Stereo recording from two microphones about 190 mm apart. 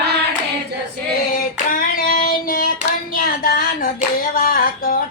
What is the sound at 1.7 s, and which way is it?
Child singing, 50° left (ahead or behind).